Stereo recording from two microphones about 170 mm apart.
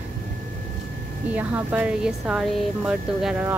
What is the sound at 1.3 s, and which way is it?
Speech, 10° right (ahead or behind).